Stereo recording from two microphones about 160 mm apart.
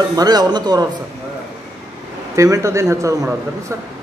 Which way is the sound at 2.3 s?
20° right (ahead or behind).